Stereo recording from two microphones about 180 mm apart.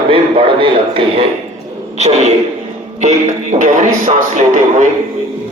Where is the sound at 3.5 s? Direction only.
40° right (ahead or behind).